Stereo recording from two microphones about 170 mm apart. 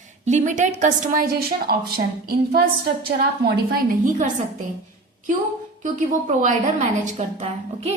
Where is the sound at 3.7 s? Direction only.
50° right (ahead or behind).